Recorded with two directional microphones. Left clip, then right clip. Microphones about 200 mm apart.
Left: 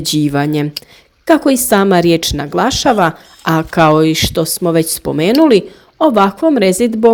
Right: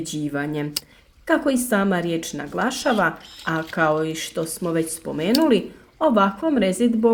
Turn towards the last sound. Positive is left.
turn(degrees=40)  # may be behind; listen again after turning